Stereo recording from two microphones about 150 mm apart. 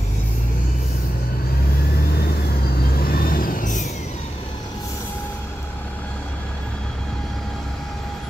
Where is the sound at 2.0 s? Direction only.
90° left; by 3.9 s 60° left (ahead or behind).